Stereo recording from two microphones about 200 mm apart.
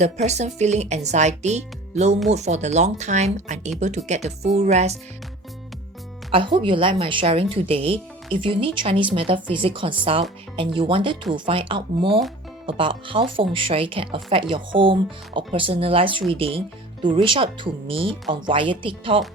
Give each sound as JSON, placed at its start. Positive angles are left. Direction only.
{"t": 0.0, "sound": "speech", "side_deg": -35}
{"t": 6.3, "sound": "speech", "side_deg": -25}